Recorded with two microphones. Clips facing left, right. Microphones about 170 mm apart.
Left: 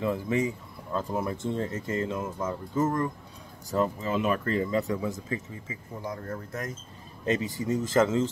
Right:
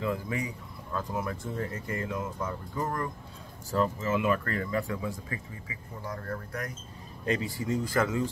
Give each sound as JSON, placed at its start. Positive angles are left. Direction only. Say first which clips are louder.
{"t": 0.0, "sound": "speech", "louder": "left 5 dB", "side_deg": 25}